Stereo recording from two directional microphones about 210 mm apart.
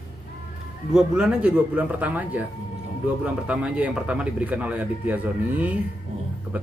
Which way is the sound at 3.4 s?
5° right (ahead or behind).